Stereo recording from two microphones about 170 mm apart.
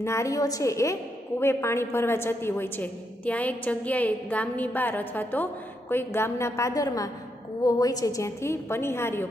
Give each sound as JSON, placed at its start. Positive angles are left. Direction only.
{"t": 0.0, "sound": "a woman's voice", "side_deg": 15}